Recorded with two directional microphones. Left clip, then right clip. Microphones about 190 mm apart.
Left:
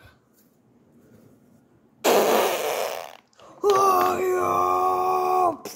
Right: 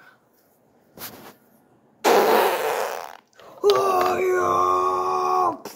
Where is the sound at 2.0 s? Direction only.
10° left (ahead or behind).